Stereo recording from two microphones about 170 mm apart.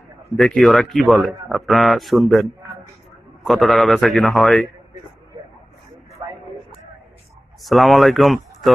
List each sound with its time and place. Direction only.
0.3 s a man's voice: centre (ahead or behind)
6.2 s a sound: 25° right (ahead or behind)
7.6 s speech: centre (ahead or behind)